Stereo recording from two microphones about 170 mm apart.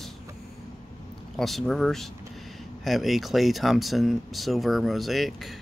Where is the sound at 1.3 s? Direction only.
Centre (ahead or behind).